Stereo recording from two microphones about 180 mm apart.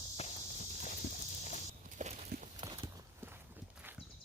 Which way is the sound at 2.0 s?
45° right (ahead or behind).